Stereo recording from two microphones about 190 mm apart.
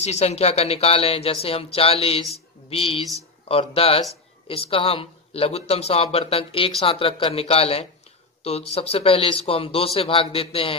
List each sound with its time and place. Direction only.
0.0 s speech: 35° left (ahead or behind)